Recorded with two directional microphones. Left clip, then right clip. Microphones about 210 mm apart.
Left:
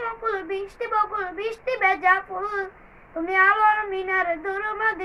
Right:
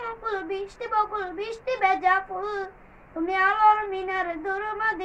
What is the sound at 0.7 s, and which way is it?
Child singing, 15° left (ahead or behind).